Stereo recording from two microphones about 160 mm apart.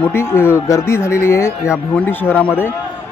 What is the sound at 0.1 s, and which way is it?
Speech, 15° left (ahead or behind).